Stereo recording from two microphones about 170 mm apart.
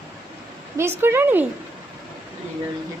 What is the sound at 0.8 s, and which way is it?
Speech, 15° right (ahead or behind).